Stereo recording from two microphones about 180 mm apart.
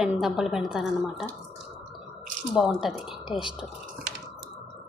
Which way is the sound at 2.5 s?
5° right (ahead or behind).